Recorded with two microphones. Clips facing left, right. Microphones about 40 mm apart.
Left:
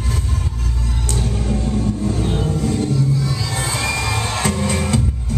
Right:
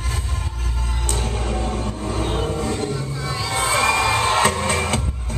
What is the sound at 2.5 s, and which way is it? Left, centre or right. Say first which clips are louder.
Music: left 3 dB; right.